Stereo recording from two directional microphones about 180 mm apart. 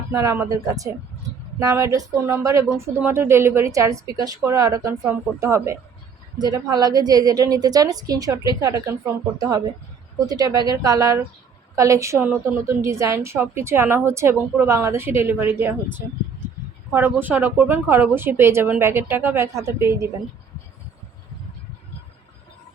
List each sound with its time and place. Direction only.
0.1 s a woman's voice: 15° right (ahead or behind)